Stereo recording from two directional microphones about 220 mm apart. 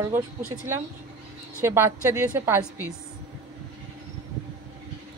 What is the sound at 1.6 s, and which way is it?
Speech, 10° right (ahead or behind).